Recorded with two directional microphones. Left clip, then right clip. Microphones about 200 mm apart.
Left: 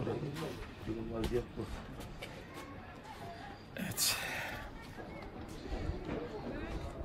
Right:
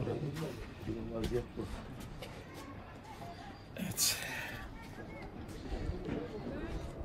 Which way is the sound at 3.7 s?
20° left (ahead or behind).